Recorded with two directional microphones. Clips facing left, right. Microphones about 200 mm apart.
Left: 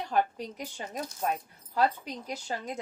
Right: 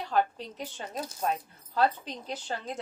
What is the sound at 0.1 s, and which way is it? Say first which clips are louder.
Speech: right 1 dB; 15° left (ahead or behind).